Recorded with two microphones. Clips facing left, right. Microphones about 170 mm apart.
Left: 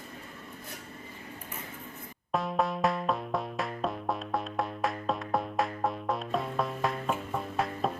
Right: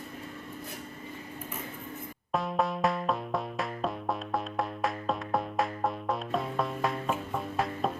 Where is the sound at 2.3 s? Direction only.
Centre (ahead or behind).